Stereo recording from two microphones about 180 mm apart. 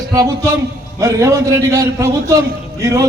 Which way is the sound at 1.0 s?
15° right (ahead or behind).